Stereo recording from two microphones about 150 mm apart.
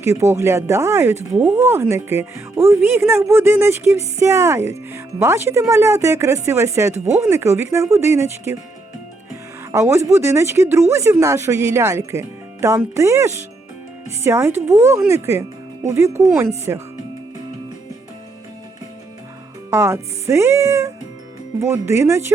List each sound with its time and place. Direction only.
0.0 s speech: 20° right (ahead or behind)
9.7 s speech: 20° right (ahead or behind)
19.7 s speech: 15° right (ahead or behind)